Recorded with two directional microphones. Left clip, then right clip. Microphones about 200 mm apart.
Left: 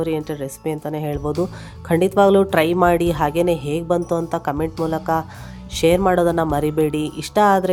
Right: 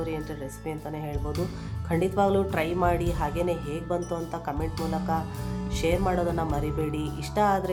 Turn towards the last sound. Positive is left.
turn(degrees=50)  # may be behind; listen again after turning